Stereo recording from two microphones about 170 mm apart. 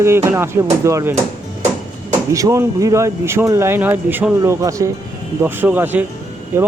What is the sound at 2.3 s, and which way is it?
Speech, 20° right (ahead or behind).